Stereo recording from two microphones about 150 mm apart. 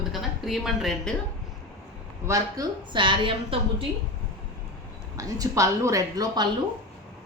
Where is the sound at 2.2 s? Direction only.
25° right (ahead or behind).